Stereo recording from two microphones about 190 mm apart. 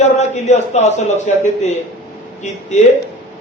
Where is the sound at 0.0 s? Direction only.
35° left (ahead or behind).